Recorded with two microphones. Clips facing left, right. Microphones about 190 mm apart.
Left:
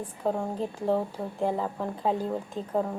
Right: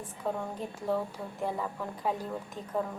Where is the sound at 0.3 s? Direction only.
30° left (ahead or behind).